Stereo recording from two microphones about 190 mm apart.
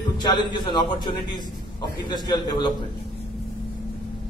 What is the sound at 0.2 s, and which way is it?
A man's voice, 25° left (ahead or behind).